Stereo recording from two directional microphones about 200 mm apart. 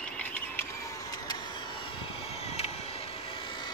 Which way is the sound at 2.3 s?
30° left (ahead or behind).